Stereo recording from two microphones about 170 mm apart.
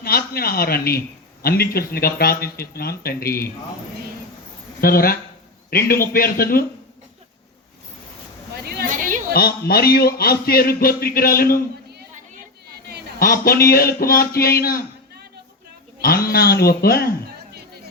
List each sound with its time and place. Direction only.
0.0 s a man's voice: 65° left (ahead or behind)
4.8 s a man's voice: 60° left (ahead or behind)
8.9 s a sound: 50° right (ahead or behind)
9.3 s a man's voice: 65° left (ahead or behind)
13.1 s a man's voice: 60° left (ahead or behind)
16.0 s a man's voice: 65° left (ahead or behind)